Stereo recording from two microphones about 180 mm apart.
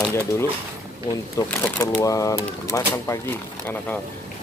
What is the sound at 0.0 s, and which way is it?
Speech, 10° left (ahead or behind).